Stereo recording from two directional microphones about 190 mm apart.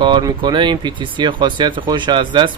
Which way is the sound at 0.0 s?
25° right (ahead or behind).